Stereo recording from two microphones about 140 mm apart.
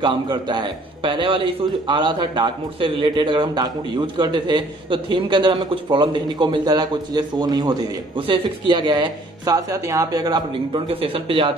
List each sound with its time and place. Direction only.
0.0 s a man's voice: 35° right (ahead or behind)
10.5 s a man's voice: 40° right (ahead or behind)